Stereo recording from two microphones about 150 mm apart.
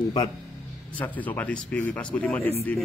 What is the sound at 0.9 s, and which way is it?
Speech, 10° left (ahead or behind).